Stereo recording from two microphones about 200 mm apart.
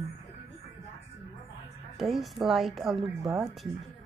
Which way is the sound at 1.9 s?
Centre (ahead or behind).